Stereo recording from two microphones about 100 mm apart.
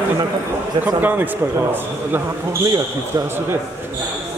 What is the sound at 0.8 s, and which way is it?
Speech, 20° right (ahead or behind).